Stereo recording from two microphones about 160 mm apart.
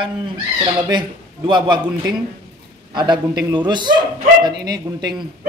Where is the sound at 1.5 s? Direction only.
30° right (ahead or behind).